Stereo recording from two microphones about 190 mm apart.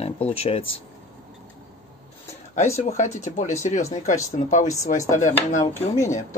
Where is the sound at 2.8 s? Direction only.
35° left (ahead or behind).